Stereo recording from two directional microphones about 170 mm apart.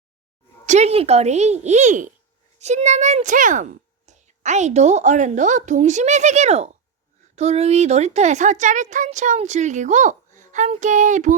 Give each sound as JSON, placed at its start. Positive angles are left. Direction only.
{"t": 0.6, "sound": "a child's voice", "side_deg": -40}